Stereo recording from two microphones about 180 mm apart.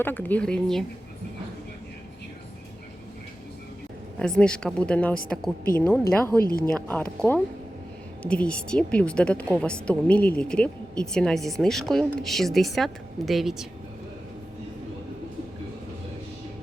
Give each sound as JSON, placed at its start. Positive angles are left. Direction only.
{"t": 0.0, "sound": "speech", "side_deg": 10}
{"t": 4.2, "sound": "a woman's voice", "side_deg": 5}
{"t": 6.1, "sound": "speech", "side_deg": 10}
{"t": 6.4, "sound": "speech", "side_deg": 55}
{"t": 6.7, "sound": "a woman's voice", "side_deg": 10}